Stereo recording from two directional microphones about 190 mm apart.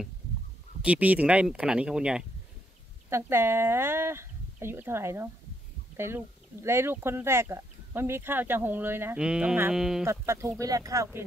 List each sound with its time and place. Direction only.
0.8 s speech: 5° right (ahead or behind)
10.0 s speech: 15° right (ahead or behind)